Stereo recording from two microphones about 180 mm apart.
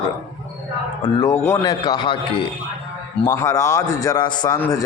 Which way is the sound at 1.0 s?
20° left (ahead or behind).